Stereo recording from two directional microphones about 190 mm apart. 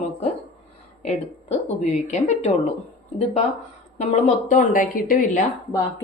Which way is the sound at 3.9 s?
40° left (ahead or behind).